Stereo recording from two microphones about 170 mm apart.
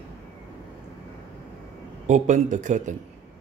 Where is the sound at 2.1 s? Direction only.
45° right (ahead or behind).